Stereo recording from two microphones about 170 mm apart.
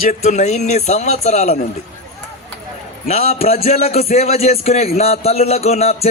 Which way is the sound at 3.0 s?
40° left (ahead or behind).